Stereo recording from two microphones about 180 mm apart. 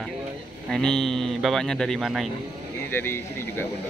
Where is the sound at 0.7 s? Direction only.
5° left (ahead or behind).